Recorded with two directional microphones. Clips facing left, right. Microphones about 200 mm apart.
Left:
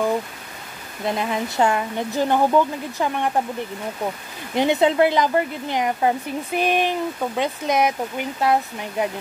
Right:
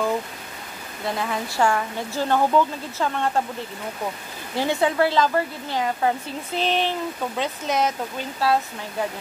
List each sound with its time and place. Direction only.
1.0 s speech: 20° left (ahead or behind)
4.6 s a woman's voice: 20° left (ahead or behind)